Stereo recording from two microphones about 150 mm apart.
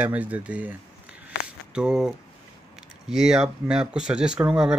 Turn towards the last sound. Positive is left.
turn(degrees=-5)  # may be behind; listen again after turning